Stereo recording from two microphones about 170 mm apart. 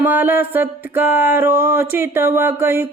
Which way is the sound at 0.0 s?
10° right (ahead or behind).